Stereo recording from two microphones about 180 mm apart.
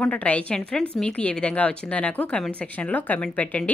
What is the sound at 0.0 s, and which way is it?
A woman's voice, 5° left (ahead or behind).